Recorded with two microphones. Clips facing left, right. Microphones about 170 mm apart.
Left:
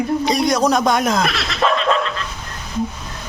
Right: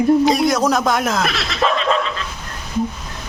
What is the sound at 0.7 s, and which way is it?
Snicker, centre (ahead or behind).